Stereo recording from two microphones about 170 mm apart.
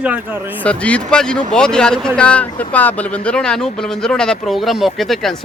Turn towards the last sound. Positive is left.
turn(degrees=0)  # may be behind; listen again after turning